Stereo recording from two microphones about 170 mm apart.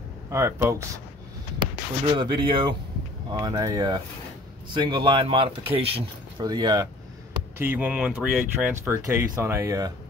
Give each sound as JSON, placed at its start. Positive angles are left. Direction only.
{"t": 0.3, "sound": "speech", "side_deg": -15}
{"t": 2.1, "sound": "speech", "side_deg": -30}
{"t": 7.5, "sound": "speech", "side_deg": -10}